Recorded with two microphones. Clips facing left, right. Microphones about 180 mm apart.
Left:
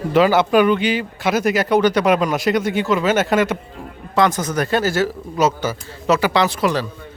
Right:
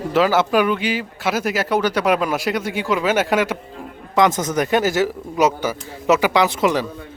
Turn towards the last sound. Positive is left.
turn(degrees=-20)  # may be behind; listen again after turning